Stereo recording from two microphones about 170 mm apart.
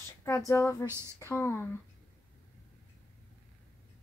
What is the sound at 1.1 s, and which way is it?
Speech, 15° left (ahead or behind).